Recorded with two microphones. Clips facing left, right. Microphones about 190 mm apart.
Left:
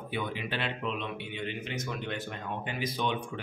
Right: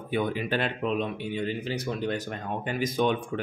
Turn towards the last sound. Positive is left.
turn(degrees=-50)  # may be behind; listen again after turning